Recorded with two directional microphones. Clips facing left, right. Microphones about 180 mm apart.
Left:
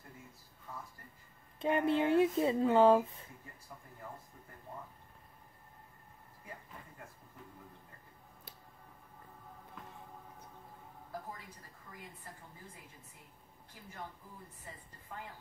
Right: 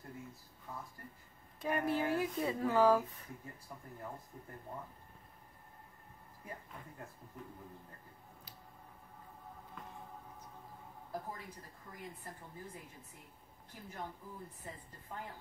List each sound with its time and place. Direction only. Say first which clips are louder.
1.6 s speech: left 4 dB; 25° left (ahead or behind)